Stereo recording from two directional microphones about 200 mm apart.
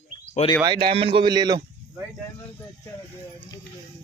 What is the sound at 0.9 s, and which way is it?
A man's voice, 25° right (ahead or behind).